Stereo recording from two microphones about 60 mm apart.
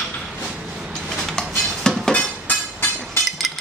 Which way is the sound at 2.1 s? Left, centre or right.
Left.